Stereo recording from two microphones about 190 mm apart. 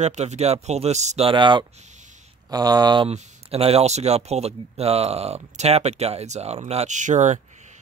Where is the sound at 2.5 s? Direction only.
20° right (ahead or behind).